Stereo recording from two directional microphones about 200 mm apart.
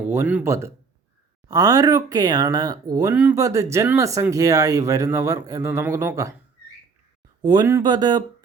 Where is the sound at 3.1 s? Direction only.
10° right (ahead or behind).